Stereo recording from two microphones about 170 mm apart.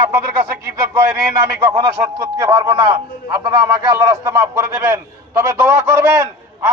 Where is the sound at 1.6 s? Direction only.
20° right (ahead or behind).